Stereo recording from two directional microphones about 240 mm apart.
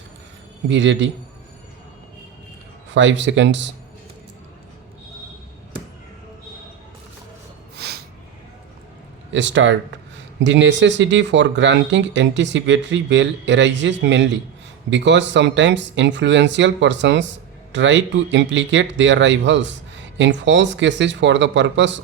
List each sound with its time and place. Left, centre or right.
0.7 s speech: right
2.9 s speech: right
7.8 s snort: right
9.3 s speech: right